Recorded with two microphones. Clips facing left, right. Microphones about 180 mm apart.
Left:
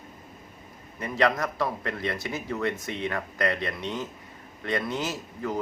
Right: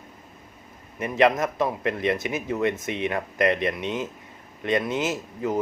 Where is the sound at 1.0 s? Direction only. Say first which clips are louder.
Right 4 dB; 20° right (ahead or behind).